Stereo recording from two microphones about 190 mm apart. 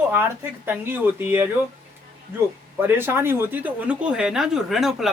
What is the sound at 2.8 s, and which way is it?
Speech, 10° right (ahead or behind).